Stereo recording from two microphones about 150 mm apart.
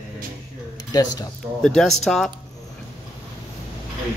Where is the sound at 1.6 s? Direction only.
Centre (ahead or behind).